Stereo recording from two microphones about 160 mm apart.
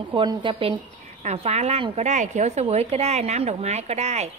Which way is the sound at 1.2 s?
45° right (ahead or behind).